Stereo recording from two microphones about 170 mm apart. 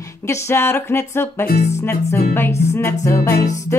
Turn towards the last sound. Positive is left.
turn(degrees=15)  # may be behind; listen again after turning